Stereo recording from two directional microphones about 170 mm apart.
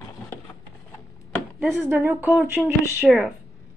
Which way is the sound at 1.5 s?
15° right (ahead or behind).